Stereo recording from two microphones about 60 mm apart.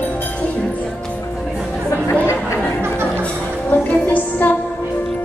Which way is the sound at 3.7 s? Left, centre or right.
Left.